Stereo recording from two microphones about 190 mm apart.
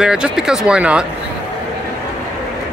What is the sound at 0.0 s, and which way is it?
Speech, 5° right (ahead or behind).